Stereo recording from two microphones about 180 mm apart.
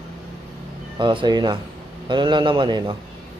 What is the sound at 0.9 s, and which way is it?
Speech, 25° right (ahead or behind).